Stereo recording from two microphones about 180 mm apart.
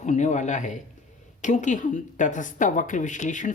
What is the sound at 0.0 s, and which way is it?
A woman's voice, 40° left (ahead or behind).